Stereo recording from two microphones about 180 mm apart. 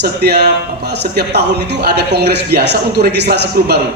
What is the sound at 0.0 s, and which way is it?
A man's voice, 65° right (ahead or behind).